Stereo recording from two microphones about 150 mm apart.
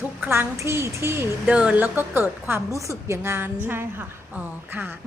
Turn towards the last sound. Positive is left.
turn(degrees=-15)  # may be behind; listen again after turning